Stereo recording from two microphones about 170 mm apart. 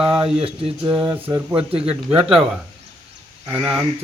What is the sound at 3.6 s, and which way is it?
Speech, 5° right (ahead or behind).